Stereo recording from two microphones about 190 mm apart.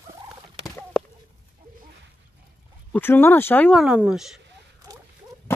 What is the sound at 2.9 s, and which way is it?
Speech, 10° left (ahead or behind).